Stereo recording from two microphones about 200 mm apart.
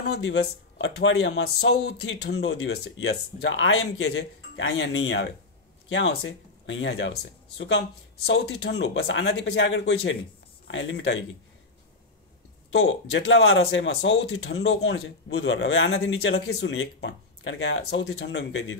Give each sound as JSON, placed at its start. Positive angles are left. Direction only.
{"t": 0.1, "sound": "speech", "side_deg": 60}
{"t": 3.3, "sound": "speech", "side_deg": 70}
{"t": 12.7, "sound": "speech", "side_deg": 80}